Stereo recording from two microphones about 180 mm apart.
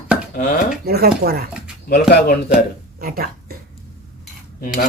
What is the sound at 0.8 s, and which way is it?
Speech, 60° right (ahead or behind).